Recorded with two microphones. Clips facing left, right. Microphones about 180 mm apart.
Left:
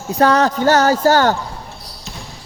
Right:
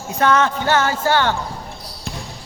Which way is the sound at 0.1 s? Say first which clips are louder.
Left 3 dB; 35° left (ahead or behind).